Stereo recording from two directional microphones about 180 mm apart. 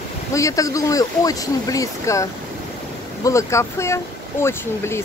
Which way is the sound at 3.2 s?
15° left (ahead or behind).